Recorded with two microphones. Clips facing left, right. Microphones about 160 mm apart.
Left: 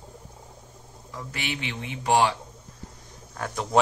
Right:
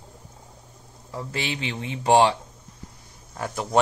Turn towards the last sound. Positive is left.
turn(degrees=-5)  # may be behind; listen again after turning